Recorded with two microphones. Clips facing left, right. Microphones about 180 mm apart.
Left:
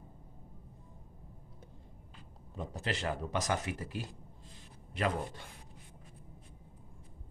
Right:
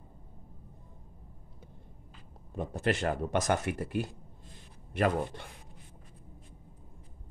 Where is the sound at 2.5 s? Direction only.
60° right (ahead or behind).